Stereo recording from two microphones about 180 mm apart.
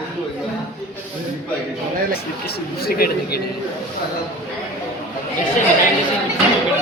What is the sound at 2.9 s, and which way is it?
Speech, 55° left (ahead or behind).